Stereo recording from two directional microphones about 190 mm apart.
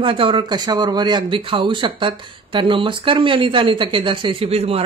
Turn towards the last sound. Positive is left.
turn(degrees=-30)  # may be behind; listen again after turning